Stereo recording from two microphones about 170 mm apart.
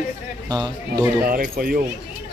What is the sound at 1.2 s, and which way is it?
Speech, 60° right (ahead or behind).